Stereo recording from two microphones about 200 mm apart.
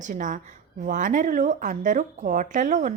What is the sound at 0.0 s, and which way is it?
A woman's voice, 40° right (ahead or behind).